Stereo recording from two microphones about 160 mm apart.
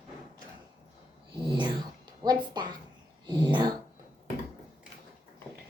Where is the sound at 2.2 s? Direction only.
25° right (ahead or behind).